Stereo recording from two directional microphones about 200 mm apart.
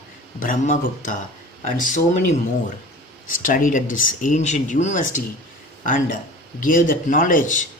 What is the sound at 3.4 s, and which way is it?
Speech, 40° left (ahead or behind).